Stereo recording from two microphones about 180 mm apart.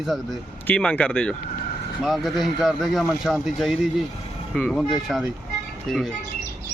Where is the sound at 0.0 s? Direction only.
Centre (ahead or behind).